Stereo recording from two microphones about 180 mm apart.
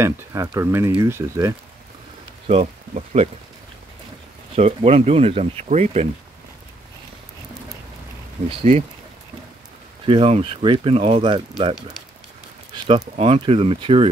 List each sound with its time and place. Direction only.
0.0 s speech: 15° right (ahead or behind)
2.4 s speech: 35° right (ahead or behind)
4.6 s speech: 35° right (ahead or behind)
8.5 s speech: 30° right (ahead or behind)
10.0 s speech: 30° right (ahead or behind)
12.7 s speech: 25° right (ahead or behind)